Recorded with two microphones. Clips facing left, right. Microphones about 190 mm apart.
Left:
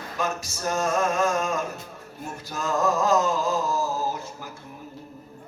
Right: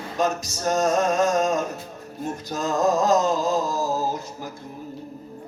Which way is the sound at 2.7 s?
40° right (ahead or behind).